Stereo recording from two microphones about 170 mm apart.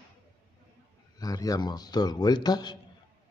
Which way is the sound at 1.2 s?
20° left (ahead or behind).